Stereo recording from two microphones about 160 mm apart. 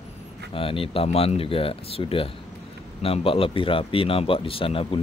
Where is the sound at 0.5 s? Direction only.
35° left (ahead or behind).